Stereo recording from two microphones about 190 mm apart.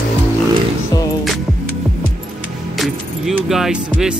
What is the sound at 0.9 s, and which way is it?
Music, 20° left (ahead or behind).